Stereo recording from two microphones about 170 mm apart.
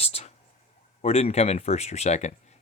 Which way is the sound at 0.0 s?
40° left (ahead or behind).